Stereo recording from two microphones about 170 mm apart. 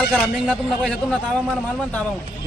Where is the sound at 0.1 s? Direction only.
5° left (ahead or behind).